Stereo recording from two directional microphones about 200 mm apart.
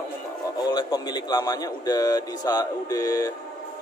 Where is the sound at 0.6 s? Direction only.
20° left (ahead or behind).